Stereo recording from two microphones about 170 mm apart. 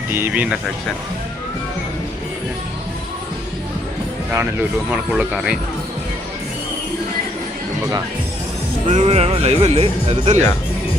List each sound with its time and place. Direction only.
0.1 s speech: 10° right (ahead or behind)
4.9 s speech: 5° right (ahead or behind)
8.9 s speech: 40° right (ahead or behind)